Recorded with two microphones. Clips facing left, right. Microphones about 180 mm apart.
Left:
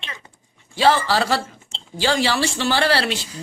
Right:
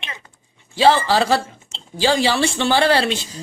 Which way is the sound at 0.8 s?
20° right (ahead or behind).